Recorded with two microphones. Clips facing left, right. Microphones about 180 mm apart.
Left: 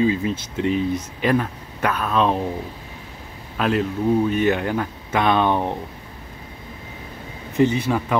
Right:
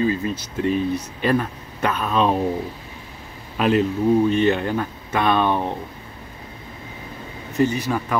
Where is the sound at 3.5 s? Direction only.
Centre (ahead or behind); by 5.7 s 15° left (ahead or behind).